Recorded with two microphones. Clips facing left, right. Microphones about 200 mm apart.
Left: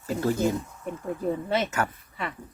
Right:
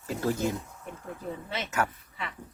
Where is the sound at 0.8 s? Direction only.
50° left (ahead or behind).